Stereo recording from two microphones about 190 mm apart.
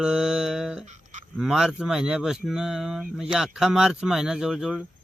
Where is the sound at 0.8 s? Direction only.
40° right (ahead or behind).